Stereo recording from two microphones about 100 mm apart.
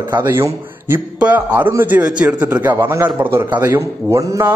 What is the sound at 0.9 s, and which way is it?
A man's voice, 15° right (ahead or behind).